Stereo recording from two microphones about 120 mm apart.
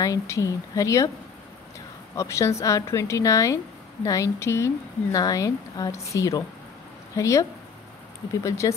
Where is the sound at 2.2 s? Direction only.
25° left (ahead or behind).